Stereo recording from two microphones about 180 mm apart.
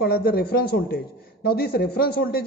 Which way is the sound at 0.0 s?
60° left (ahead or behind).